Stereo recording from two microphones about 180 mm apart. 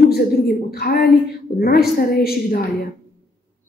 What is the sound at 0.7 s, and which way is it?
A woman's voice, 55° left (ahead or behind).